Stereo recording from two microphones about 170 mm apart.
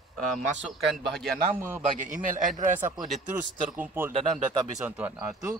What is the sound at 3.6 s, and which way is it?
Speech, 10° right (ahead or behind).